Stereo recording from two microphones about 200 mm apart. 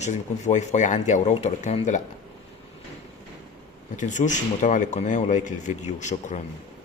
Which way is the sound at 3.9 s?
40° left (ahead or behind).